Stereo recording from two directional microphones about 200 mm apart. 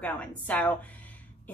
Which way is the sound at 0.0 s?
5° left (ahead or behind).